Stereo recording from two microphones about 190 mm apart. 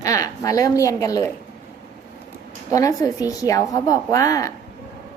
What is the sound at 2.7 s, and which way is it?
A woman's voice, 15° left (ahead or behind).